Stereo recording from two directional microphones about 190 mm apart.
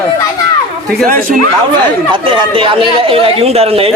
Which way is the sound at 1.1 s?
45° right (ahead or behind).